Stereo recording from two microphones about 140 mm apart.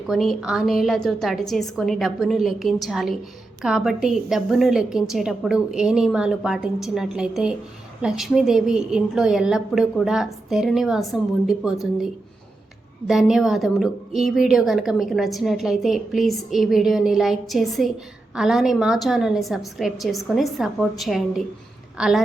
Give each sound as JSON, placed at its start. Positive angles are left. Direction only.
{"t": 0.1, "sound": "a woman's voice", "side_deg": 0}